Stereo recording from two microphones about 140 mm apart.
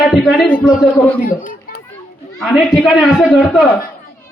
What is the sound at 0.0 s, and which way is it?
Speech, centre (ahead or behind).